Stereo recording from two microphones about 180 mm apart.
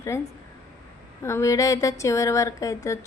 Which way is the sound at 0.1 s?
15° left (ahead or behind).